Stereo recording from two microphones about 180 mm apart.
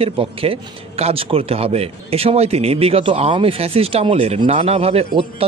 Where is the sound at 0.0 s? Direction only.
30° right (ahead or behind).